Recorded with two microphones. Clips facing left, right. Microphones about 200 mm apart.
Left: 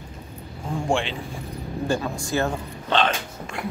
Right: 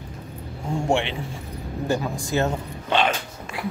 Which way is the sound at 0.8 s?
20° right (ahead or behind).